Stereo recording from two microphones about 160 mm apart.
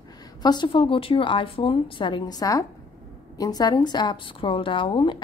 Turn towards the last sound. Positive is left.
turn(degrees=30)  # may be behind; listen again after turning